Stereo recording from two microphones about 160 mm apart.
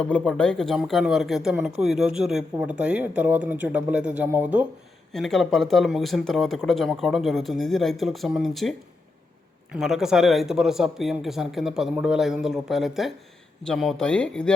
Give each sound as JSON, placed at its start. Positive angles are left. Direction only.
{"t": 0.0, "sound": "speech", "side_deg": 5}
{"t": 5.1, "sound": "speech", "side_deg": 0}
{"t": 9.7, "sound": "speech", "side_deg": 0}